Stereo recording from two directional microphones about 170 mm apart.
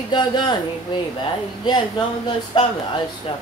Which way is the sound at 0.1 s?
25° left (ahead or behind).